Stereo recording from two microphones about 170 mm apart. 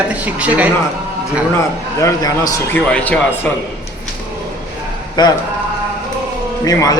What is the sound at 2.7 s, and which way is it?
Speech, 10° left (ahead or behind).